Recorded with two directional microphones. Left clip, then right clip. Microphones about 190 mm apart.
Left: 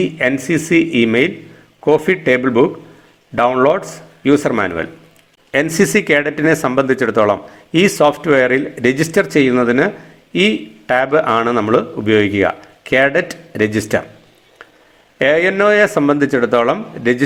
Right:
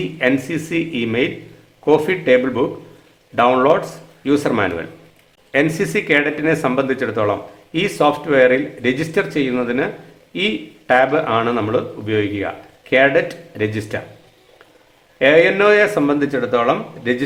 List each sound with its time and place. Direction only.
0.0 s speech: 25° left (ahead or behind)
15.2 s a man's voice: 30° left (ahead or behind)